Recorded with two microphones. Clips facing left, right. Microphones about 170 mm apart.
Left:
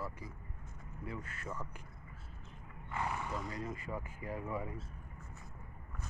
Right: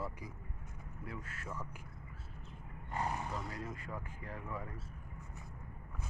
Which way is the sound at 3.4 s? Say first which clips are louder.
Left 2 dB; centre (ahead or behind).